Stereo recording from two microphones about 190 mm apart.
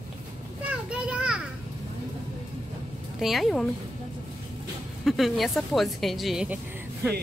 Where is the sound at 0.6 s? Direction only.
5° right (ahead or behind).